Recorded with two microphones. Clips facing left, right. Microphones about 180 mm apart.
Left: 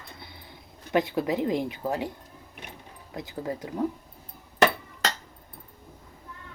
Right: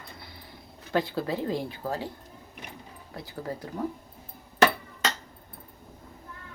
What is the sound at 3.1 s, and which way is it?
Speech, 15° left (ahead or behind).